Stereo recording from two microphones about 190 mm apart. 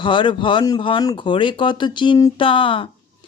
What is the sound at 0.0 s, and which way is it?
Speech, 25° left (ahead or behind).